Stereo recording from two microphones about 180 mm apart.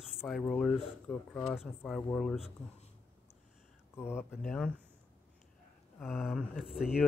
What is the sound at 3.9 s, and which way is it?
Speech, 15° left (ahead or behind).